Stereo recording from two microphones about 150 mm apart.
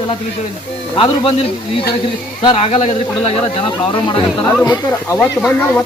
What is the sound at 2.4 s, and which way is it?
Speech, 35° left (ahead or behind).